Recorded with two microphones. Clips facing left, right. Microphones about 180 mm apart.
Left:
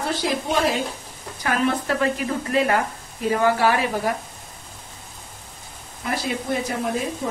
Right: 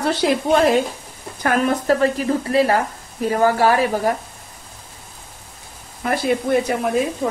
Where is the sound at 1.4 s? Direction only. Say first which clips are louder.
Right 3 dB; 45° right (ahead or behind).